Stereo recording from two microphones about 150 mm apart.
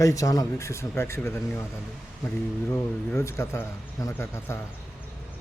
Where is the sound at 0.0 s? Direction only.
20° left (ahead or behind).